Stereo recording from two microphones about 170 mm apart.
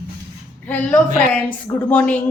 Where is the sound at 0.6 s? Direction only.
10° left (ahead or behind).